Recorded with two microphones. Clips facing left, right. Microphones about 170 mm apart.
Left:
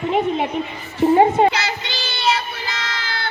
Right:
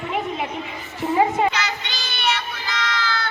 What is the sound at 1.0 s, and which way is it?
Child singing, 35° left (ahead or behind).